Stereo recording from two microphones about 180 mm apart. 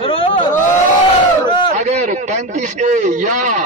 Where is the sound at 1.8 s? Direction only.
40° right (ahead or behind).